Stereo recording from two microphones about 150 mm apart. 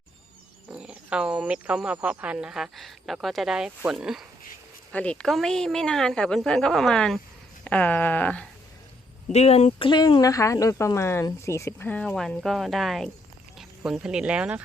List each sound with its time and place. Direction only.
0.7 s speech: 5° right (ahead or behind)
4.9 s speech: 10° left (ahead or behind)
9.3 s speech: 45° left (ahead or behind); by 14.6 s 5° right (ahead or behind)